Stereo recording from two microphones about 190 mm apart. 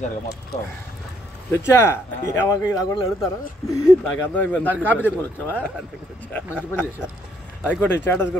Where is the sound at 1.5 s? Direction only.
15° left (ahead or behind).